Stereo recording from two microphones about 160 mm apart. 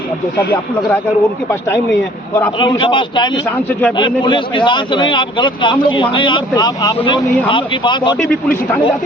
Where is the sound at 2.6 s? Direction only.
30° left (ahead or behind).